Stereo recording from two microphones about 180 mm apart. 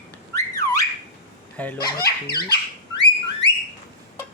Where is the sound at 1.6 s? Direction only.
10° left (ahead or behind).